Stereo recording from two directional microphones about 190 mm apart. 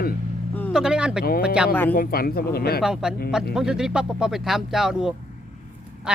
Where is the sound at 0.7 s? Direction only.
5° right (ahead or behind).